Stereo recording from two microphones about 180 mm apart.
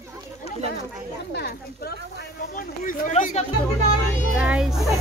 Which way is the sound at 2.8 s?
45° left (ahead or behind).